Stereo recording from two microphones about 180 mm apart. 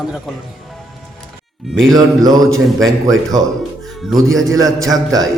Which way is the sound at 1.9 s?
20° right (ahead or behind).